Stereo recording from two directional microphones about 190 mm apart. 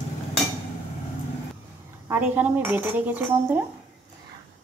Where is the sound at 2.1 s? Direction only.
10° right (ahead or behind).